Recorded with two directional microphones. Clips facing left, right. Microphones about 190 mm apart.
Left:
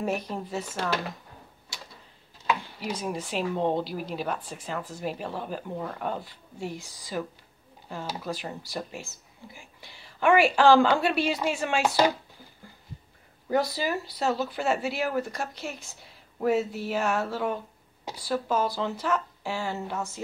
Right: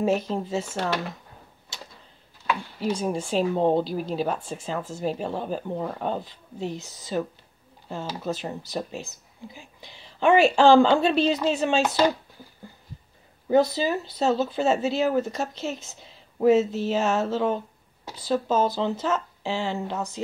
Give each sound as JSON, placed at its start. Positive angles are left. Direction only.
{"t": 0.0, "sound": "speech", "side_deg": -25}
{"t": 2.8, "sound": "speech", "side_deg": -30}
{"t": 13.5, "sound": "speech", "side_deg": -20}